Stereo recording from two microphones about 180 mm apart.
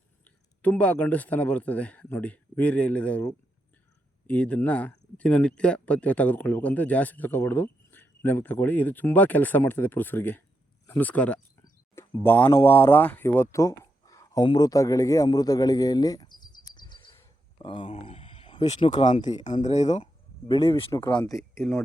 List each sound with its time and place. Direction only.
0.3 s speech: 10° left (ahead or behind)
4.3 s speech: 5° left (ahead or behind); by 20.9 s 30° left (ahead or behind)
20.9 s speech: 10° left (ahead or behind)